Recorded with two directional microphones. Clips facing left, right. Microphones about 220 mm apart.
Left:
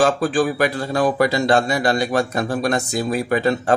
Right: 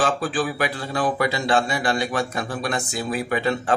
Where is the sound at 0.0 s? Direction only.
45° left (ahead or behind).